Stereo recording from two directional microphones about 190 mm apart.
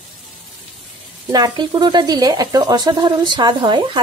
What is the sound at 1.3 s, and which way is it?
Speech, 20° right (ahead or behind).